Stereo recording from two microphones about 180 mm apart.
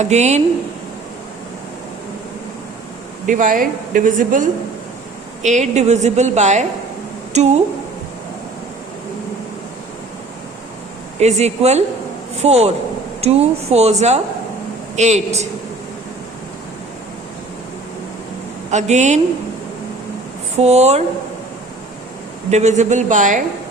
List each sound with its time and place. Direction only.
0.0 s a woman's voice: 40° right (ahead or behind)
3.2 s a woman's voice: 45° right (ahead or behind)
11.2 s a woman's voice: 40° right (ahead or behind)
14.9 s a woman's voice: 40° right (ahead or behind)
18.7 s a woman's voice: 40° right (ahead or behind)
20.6 s a woman's voice: 40° right (ahead or behind)
22.4 s a woman's voice: 40° right (ahead or behind)